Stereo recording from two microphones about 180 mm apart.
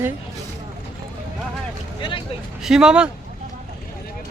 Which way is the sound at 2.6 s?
5° right (ahead or behind).